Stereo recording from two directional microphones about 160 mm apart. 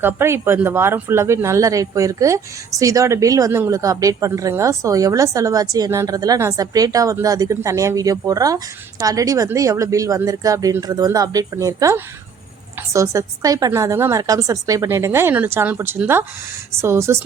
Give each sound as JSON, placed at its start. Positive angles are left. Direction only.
{"t": 0.0, "sound": "speech", "side_deg": -15}